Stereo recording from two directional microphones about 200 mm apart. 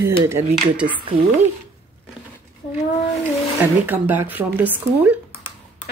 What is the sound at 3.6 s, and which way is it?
Speech, 10° right (ahead or behind).